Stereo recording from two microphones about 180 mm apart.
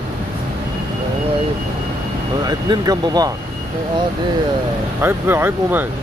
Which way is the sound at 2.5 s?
25° right (ahead or behind).